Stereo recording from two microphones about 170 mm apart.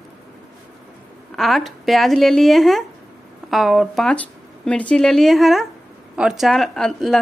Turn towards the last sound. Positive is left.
turn(degrees=0)  # may be behind; listen again after turning